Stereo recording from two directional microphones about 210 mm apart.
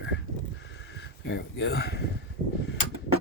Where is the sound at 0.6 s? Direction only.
55° left (ahead or behind).